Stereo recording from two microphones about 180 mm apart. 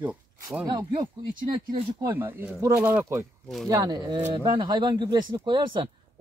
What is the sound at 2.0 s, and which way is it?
Speech, 10° right (ahead or behind).